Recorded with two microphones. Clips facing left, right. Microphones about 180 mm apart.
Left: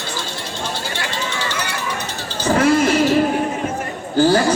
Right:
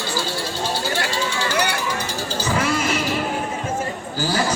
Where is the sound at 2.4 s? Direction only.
50° left (ahead or behind).